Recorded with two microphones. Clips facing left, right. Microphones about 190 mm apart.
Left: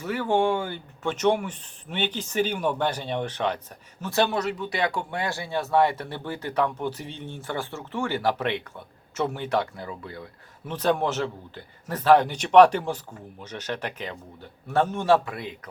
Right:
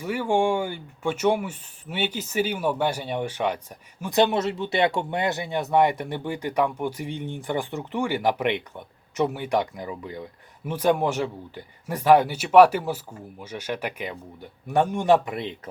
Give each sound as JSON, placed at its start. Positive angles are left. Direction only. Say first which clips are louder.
{"t": 0.0, "sound": "speech", "louder": "right 1 dB", "side_deg": -10}